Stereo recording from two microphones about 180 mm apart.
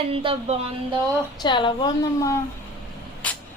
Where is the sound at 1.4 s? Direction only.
25° left (ahead or behind).